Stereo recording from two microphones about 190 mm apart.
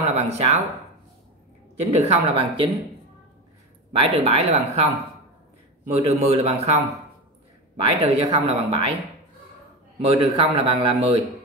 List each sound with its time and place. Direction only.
0.0 s speech: 35° right (ahead or behind)
1.8 s speech: 35° right (ahead or behind)
3.9 s speech: 30° right (ahead or behind)
5.9 s speech: 30° right (ahead or behind)
9.9 s a man's voice: 30° right (ahead or behind)